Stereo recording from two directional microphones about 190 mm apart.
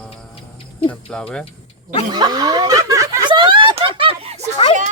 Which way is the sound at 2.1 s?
20° right (ahead or behind).